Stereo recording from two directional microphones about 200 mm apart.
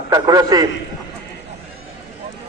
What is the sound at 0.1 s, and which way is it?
Speech, 20° right (ahead or behind).